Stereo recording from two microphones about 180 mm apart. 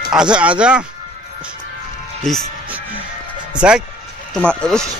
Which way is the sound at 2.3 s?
Centre (ahead or behind).